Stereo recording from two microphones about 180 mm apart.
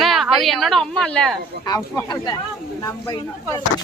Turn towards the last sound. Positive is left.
turn(degrees=15)  # may be behind; listen again after turning